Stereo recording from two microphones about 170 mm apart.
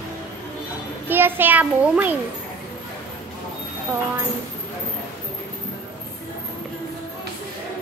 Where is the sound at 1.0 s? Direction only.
10° right (ahead or behind).